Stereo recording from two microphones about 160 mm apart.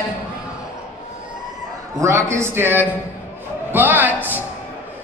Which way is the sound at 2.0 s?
15° right (ahead or behind).